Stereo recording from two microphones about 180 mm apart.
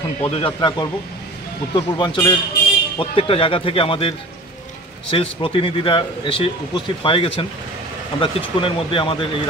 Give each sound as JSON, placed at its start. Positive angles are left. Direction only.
{"t": 0.2, "sound": "speech", "side_deg": 35}
{"t": 5.1, "sound": "speech", "side_deg": 30}